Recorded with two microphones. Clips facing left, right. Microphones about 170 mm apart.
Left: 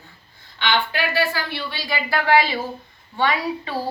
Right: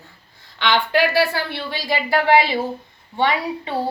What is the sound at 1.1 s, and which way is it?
Speech, 70° right (ahead or behind).